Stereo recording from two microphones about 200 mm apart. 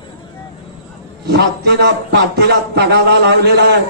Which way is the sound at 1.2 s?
55° right (ahead or behind).